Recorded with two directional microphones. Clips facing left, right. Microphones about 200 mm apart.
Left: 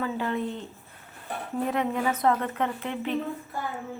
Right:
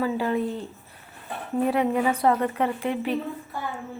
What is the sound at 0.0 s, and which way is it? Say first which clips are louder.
Speech: right 4 dB; 10° right (ahead or behind).